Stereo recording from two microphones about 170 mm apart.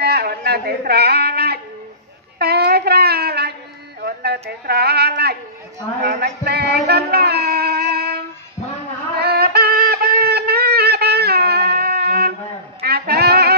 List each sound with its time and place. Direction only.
0.0 s a sound: 70° right (ahead or behind)
6.0 s music: 65° right (ahead or behind)
9.2 s synthetic singing: 70° right (ahead or behind)
12.8 s saxophone: 65° right (ahead or behind)